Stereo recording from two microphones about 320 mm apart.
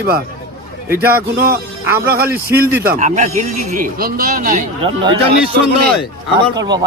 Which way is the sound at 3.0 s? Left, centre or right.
Right.